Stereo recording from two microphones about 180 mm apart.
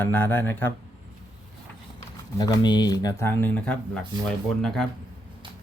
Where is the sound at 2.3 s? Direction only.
20° left (ahead or behind); by 4.9 s 5° left (ahead or behind).